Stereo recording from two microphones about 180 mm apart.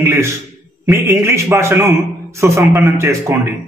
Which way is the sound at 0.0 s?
15° right (ahead or behind).